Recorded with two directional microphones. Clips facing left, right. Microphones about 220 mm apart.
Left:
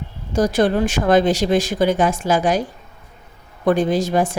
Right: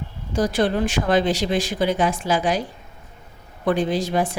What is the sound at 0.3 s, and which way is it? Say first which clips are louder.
A woman's voice: left 4 dB; 45° left (ahead or behind).